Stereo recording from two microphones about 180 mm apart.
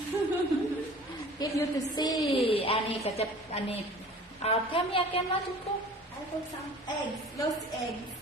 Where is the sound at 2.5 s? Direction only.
30° left (ahead or behind).